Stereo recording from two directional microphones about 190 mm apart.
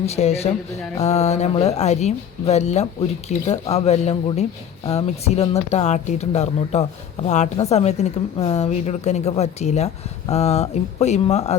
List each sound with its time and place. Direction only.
0.0 s a woman's voice: 35° left (ahead or behind)